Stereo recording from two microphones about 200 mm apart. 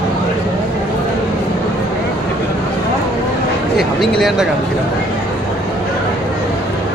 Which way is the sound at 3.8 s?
Centre (ahead or behind).